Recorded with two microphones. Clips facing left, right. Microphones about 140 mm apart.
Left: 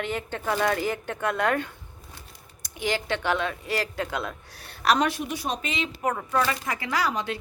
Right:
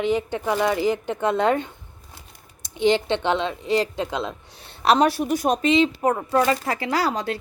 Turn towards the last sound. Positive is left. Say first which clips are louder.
# right 4 dB
turn(degrees=-35)  # may be behind; listen again after turning